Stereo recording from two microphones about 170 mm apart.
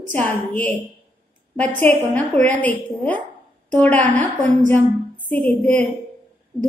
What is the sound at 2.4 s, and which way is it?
A woman's voice, 10° left (ahead or behind).